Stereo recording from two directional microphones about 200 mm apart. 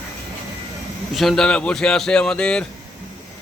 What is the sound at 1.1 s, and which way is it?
Speech, centre (ahead or behind).